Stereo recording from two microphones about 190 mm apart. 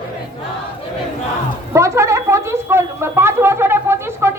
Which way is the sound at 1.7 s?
15° right (ahead or behind).